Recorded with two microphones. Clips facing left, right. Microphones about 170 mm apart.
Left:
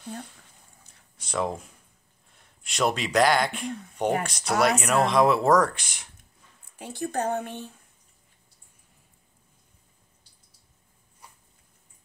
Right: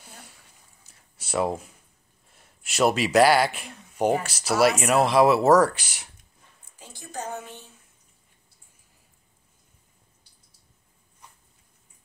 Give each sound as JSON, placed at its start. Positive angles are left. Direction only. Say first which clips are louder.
{"t": 1.1, "sound": "speech", "louder": "right 3 dB", "side_deg": -5}
{"t": 6.8, "sound": "speech", "louder": "left 8 dB", "side_deg": 60}